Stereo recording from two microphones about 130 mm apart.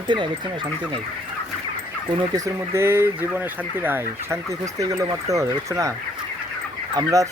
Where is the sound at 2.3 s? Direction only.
25° right (ahead or behind).